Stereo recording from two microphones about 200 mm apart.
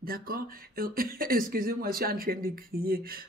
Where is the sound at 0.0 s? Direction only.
45° right (ahead or behind).